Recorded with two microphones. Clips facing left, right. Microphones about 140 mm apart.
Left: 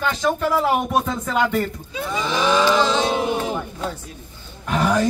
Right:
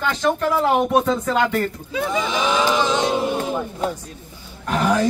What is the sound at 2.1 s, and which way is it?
Speech, 15° right (ahead or behind).